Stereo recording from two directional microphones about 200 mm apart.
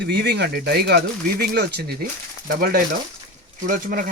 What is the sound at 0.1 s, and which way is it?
Speech, 55° right (ahead or behind).